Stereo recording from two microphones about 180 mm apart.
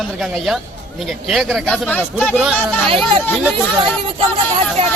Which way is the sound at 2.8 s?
30° right (ahead or behind).